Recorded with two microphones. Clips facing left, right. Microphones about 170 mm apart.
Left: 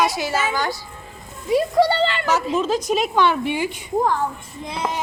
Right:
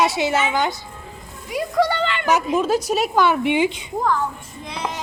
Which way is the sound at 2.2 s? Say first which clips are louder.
Right 2 dB; 15° right (ahead or behind).